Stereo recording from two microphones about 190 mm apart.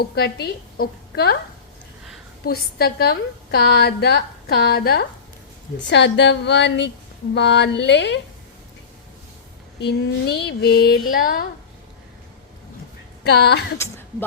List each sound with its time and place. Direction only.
0.0 s a woman's voice: 55° left (ahead or behind)
2.5 s a woman's voice: 55° left (ahead or behind)
5.9 s a woman's voice: 70° left (ahead or behind)
9.8 s a woman's voice: 60° left (ahead or behind)
13.2 s a woman's voice: 60° left (ahead or behind)